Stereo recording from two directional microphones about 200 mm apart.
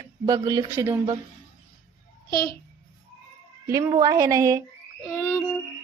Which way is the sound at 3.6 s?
15° right (ahead or behind).